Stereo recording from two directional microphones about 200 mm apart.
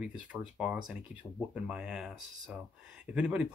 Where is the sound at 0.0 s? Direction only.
5° right (ahead or behind).